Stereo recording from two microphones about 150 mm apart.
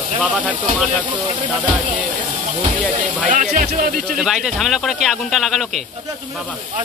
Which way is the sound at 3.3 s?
60° right (ahead or behind).